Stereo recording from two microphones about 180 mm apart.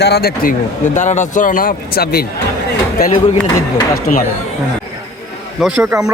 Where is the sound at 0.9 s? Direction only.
40° left (ahead or behind); by 2.2 s 60° left (ahead or behind).